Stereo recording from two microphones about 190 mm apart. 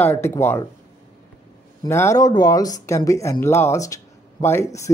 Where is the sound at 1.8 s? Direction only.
15° left (ahead or behind).